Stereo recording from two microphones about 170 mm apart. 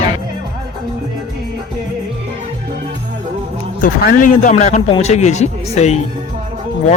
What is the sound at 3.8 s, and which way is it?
A man's voice, 55° left (ahead or behind).